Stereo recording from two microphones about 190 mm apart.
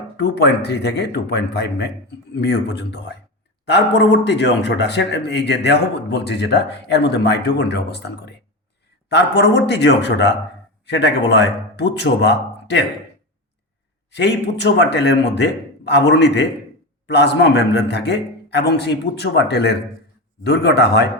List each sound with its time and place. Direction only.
0.2 s a man's voice: 60° left (ahead or behind)
14.2 s speech: 65° left (ahead or behind)